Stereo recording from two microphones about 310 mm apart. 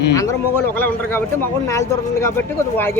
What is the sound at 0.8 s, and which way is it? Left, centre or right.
Speech, centre.